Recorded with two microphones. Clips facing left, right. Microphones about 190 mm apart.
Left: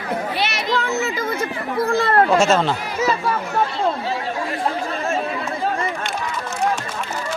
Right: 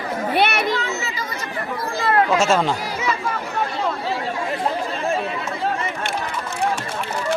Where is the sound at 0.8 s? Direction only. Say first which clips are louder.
Left 5 dB; 55° left (ahead or behind).